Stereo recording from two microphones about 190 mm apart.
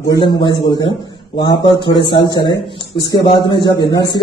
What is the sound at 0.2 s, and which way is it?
A man's voice, 25° left (ahead or behind).